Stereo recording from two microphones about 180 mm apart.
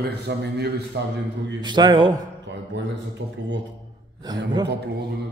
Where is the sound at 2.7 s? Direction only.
80° right.